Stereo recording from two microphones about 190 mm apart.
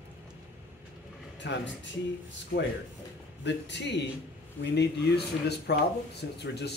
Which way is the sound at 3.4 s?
65° left (ahead or behind).